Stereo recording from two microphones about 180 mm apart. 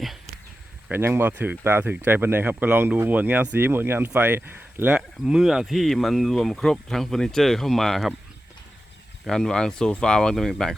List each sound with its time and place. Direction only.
0.9 s speech: 10° right (ahead or behind)
9.2 s speech: centre (ahead or behind)